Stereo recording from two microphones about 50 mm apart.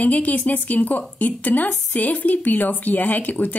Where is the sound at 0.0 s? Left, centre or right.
Left.